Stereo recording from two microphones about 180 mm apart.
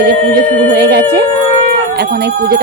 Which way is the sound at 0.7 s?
70° right (ahead or behind).